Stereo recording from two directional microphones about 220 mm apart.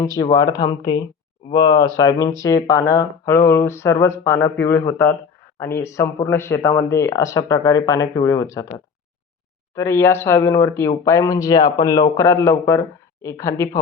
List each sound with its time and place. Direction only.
0.0 s speech: 15° left (ahead or behind)
9.7 s speech: 10° left (ahead or behind)